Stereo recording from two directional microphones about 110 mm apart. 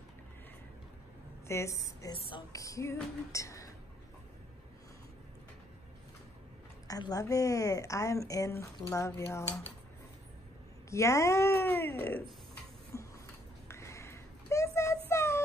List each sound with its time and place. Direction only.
1.5 s a woman's voice: 30° left (ahead or behind)
2.1 s speech: 55° left (ahead or behind)
2.5 s a woman's voice: 30° left (ahead or behind)
6.9 s a woman's voice: 35° left (ahead or behind)
10.9 s a woman's voice: 30° left (ahead or behind)
12.9 s a sound: 25° left (ahead or behind)